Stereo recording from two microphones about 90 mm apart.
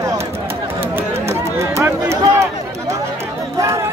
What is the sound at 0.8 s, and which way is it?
Run, 30° right (ahead or behind).